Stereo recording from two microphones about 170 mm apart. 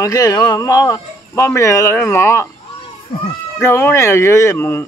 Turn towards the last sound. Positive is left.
turn(degrees=15)  # may be behind; listen again after turning